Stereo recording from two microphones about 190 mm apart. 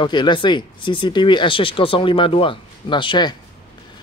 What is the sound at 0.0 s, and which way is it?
Speech, 25° left (ahead or behind).